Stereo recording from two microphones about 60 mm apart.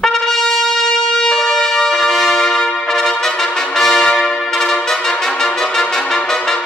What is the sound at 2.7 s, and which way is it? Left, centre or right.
Brass instrument, centre.